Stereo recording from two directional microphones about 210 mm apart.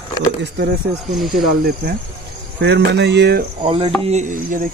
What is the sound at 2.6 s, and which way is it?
Speech, 55° right (ahead or behind).